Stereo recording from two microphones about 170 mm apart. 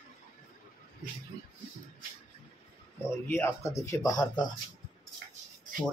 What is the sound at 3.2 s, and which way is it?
Speech, 15° left (ahead or behind).